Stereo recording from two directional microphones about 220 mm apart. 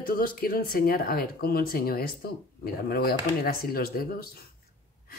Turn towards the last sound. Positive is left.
turn(degrees=45)  # may be behind; listen again after turning